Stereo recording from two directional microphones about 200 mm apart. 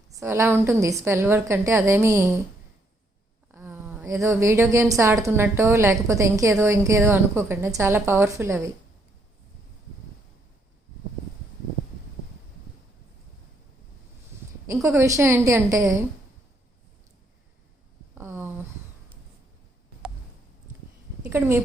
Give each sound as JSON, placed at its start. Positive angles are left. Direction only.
{"t": 0.1, "sound": "a woman's voice", "side_deg": -15}
{"t": 3.5, "sound": "a woman's voice", "side_deg": -10}
{"t": 14.7, "sound": "a woman's voice", "side_deg": -15}
{"t": 18.1, "sound": "a sound", "side_deg": -10}
{"t": 21.2, "sound": "a woman's voice", "side_deg": -10}